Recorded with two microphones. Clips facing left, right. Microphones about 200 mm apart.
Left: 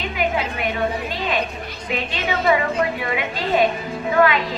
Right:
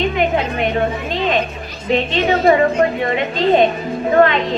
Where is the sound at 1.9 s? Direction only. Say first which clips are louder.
Right 9 dB; 40° right (ahead or behind).